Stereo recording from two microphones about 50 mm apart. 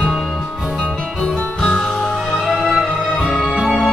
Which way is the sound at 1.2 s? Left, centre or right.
Centre.